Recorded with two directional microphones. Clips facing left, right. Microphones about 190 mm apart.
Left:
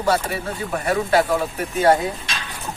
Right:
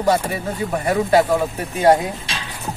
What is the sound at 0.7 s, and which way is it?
Speech, 20° right (ahead or behind).